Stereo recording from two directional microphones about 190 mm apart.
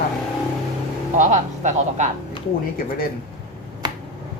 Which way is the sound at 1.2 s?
40° right (ahead or behind).